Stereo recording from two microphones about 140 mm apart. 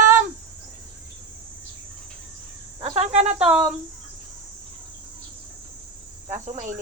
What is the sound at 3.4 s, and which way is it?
Speech, 10° right (ahead or behind).